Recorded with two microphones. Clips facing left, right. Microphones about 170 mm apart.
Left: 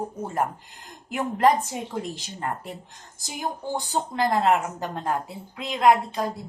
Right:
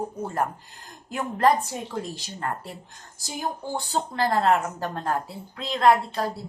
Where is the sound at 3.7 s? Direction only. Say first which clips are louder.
Left 1 dB; 15° left (ahead or behind).